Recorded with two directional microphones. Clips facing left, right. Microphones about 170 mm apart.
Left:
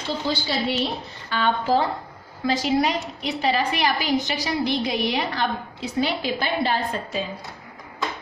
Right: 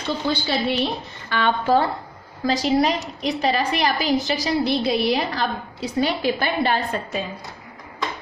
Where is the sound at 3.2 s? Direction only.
40° right (ahead or behind).